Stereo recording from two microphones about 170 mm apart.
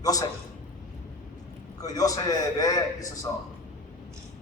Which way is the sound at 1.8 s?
20° left (ahead or behind).